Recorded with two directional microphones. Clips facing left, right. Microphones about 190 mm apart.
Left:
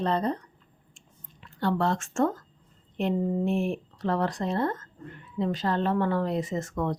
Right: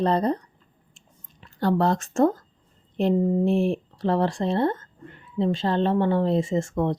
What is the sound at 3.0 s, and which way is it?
Speech, 35° right (ahead or behind).